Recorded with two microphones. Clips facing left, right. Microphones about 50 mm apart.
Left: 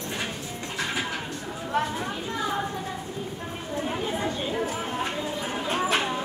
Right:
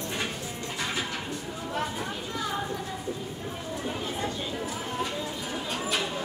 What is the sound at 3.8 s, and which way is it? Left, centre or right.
Chatter, left.